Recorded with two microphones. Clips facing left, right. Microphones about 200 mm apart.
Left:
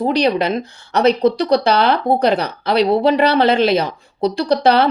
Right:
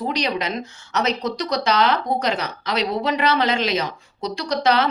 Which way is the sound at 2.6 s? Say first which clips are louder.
Left 9 dB; 60° left (ahead or behind).